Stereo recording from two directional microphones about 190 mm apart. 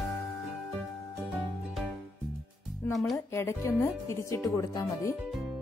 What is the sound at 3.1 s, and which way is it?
Speech, 15° left (ahead or behind).